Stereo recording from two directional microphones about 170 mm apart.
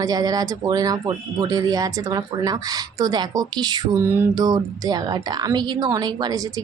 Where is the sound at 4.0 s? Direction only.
15° right (ahead or behind).